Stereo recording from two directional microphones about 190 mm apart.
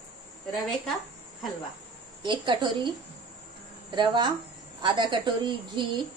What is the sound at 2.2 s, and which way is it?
A woman's voice, 25° right (ahead or behind).